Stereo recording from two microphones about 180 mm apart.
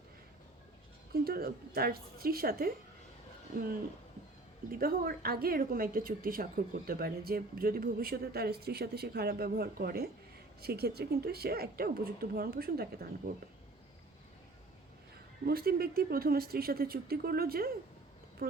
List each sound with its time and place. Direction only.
1.1 s a woman's voice: 60° right (ahead or behind)
4.8 s a woman's voice: 55° right (ahead or behind)
15.4 s a woman's voice: 60° right (ahead or behind)